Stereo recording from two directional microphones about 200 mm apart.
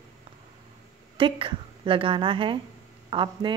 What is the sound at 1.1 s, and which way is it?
A woman's voice, 25° right (ahead or behind).